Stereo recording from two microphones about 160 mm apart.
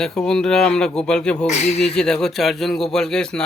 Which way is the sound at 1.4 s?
45° left (ahead or behind).